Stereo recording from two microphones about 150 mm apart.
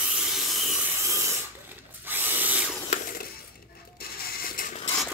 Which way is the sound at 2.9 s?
70° left (ahead or behind).